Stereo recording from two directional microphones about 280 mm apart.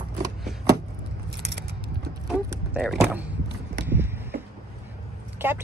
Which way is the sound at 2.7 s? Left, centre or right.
Centre.